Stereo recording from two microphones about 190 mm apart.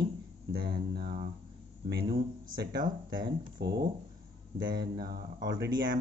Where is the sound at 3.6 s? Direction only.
60° right (ahead or behind).